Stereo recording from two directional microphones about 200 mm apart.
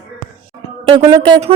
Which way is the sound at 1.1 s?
20° right (ahead or behind).